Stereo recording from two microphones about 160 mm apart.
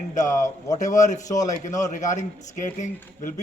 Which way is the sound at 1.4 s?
50° left (ahead or behind).